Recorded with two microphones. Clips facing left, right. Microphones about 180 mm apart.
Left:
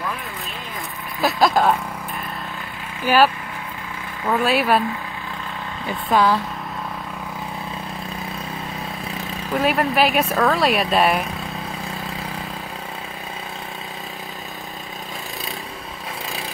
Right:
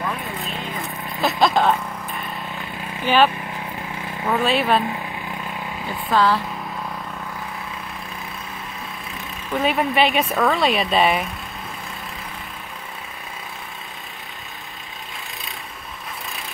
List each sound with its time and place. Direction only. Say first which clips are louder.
1.2 s speech: left 1 dB; centre (ahead or behind)
4.3 s speech: left 1 dB; centre (ahead or behind)
6.0 s speech: left 1 dB; 15° left (ahead or behind)
9.6 s speech: left 1 dB; centre (ahead or behind)